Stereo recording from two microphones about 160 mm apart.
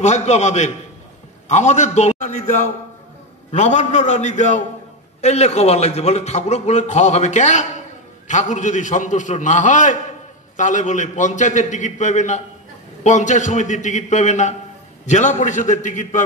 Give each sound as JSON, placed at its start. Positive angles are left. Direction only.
{"t": 0.0, "sound": "a man's voice", "side_deg": 45}